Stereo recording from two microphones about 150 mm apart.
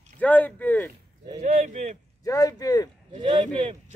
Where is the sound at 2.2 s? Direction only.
25° left (ahead or behind).